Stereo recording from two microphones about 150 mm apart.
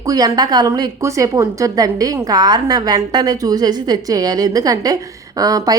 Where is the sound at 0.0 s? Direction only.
25° right (ahead or behind).